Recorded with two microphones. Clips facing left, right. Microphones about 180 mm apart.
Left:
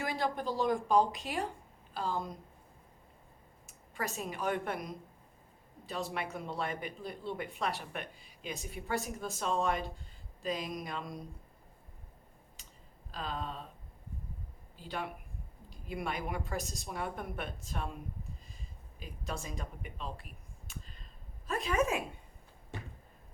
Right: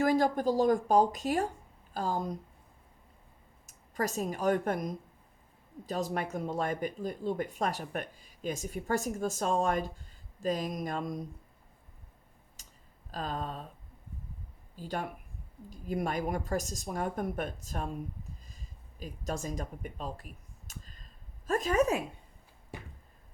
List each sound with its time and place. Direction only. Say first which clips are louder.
0.0 s speech: right 8 dB; 45° right (ahead or behind)
3.7 s speech: right 6 dB; 40° right (ahead or behind)
12.6 s a sound: right 1 dB; 45° right (ahead or behind)
13.1 s speech: right 3 dB; 45° right (ahead or behind)
14.8 s speech: right 3 dB; 45° right (ahead or behind)